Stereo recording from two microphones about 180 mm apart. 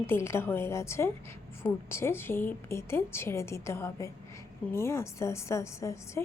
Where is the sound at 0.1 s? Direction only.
15° left (ahead or behind).